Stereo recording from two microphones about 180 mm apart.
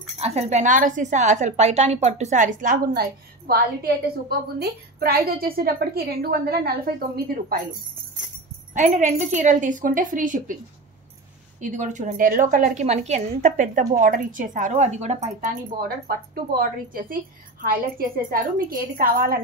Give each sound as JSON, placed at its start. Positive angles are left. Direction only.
{"t": 0.2, "sound": "a woman's voice", "side_deg": -35}
{"t": 8.7, "sound": "a woman's voice", "side_deg": -40}
{"t": 11.6, "sound": "a woman's voice", "side_deg": -45}
{"t": 15.8, "sound": "a woman's voice", "side_deg": -55}